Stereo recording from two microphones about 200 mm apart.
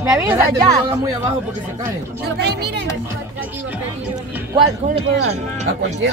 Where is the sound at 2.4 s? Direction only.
55° right (ahead or behind).